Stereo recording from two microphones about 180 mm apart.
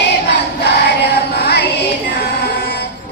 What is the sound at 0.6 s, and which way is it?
Music, 65° left (ahead or behind).